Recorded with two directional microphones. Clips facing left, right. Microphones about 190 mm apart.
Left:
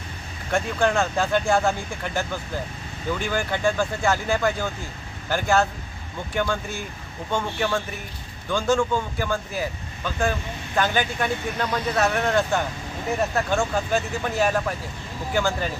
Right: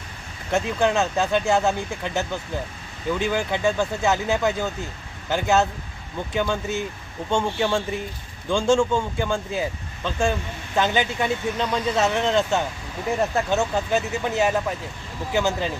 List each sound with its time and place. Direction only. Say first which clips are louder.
0.5 s speech: right 1 dB; 20° right (ahead or behind)